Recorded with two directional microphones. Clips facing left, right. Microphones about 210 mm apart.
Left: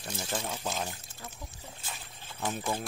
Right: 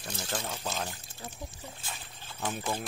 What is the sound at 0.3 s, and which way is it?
Speech, 5° left (ahead or behind).